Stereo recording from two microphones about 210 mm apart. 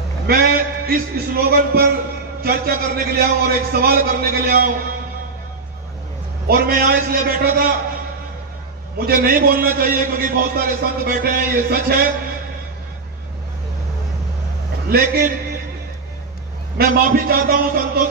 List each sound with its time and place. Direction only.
0.3 s a man's voice: 45° right (ahead or behind)
6.4 s a man's voice: 45° right (ahead or behind)
9.0 s a man's voice: 45° right (ahead or behind)
14.9 s a man's voice: 45° right (ahead or behind)
16.7 s a man's voice: 45° right (ahead or behind)